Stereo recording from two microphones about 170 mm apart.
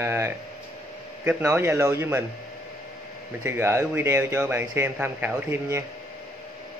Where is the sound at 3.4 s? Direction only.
15° right (ahead or behind).